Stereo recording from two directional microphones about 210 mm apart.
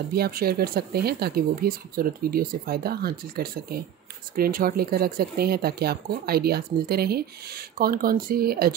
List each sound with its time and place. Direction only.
0.1 s speech: 45° right (ahead or behind)